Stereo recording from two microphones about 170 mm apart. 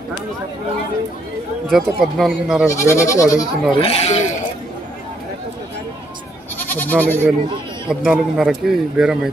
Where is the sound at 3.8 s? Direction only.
40° left (ahead or behind).